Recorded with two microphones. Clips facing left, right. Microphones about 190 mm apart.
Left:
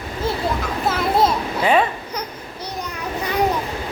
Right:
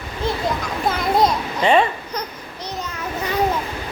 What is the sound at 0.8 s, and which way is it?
Children playing, 5° left (ahead or behind).